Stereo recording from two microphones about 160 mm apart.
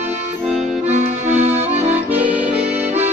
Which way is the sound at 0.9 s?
15° right (ahead or behind).